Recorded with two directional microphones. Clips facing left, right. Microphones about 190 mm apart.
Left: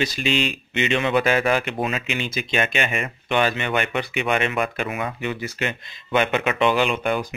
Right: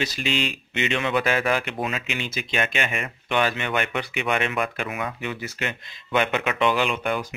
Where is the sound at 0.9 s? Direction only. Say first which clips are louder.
Left 4 dB; 25° left (ahead or behind).